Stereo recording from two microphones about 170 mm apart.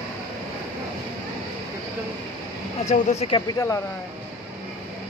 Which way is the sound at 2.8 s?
45° left (ahead or behind).